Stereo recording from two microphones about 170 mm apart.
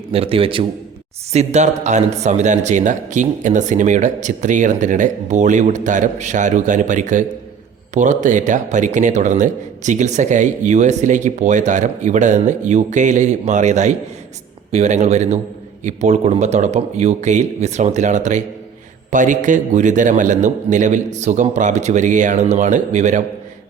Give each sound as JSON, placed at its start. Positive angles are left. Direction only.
{"t": 0.1, "sound": "speech", "side_deg": -35}